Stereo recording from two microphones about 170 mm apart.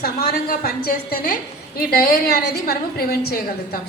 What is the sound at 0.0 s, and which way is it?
A woman's voice, 60° left (ahead or behind).